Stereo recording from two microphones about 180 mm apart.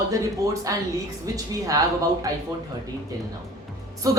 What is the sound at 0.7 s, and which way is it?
Speech, 20° right (ahead or behind).